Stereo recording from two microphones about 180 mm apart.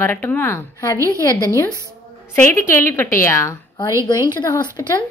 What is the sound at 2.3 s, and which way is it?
A woman's voice, 15° left (ahead or behind).